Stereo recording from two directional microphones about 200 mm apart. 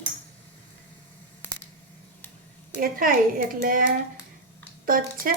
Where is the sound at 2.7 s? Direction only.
45° right (ahead or behind).